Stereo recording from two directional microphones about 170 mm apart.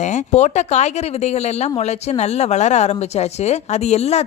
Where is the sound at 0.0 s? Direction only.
45° left (ahead or behind).